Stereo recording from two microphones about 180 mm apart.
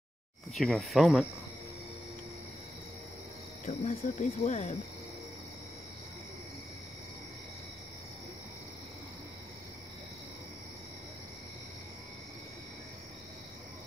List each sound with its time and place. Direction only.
0.6 s speech: centre (ahead or behind)
3.6 s speech: 45° left (ahead or behind)